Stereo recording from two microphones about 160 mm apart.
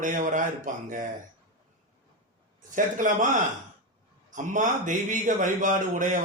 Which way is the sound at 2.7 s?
55° right (ahead or behind).